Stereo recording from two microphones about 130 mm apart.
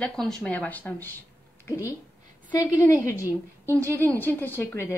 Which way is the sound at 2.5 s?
25° left (ahead or behind).